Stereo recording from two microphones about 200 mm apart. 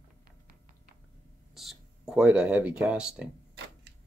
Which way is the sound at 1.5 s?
Centre (ahead or behind).